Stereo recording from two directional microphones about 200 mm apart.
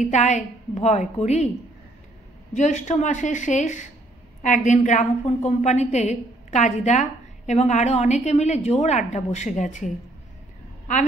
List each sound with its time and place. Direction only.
0.0 s a woman's voice: 35° left (ahead or behind)
2.5 s a woman's voice: 35° left (ahead or behind)